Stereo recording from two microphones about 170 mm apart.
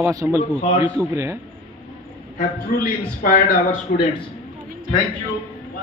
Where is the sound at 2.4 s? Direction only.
55° left (ahead or behind).